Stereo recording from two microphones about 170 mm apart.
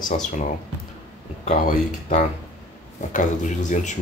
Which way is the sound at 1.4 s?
50° left (ahead or behind).